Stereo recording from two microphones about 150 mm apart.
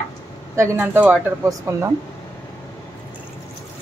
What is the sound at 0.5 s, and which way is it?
Speech, 15° right (ahead or behind).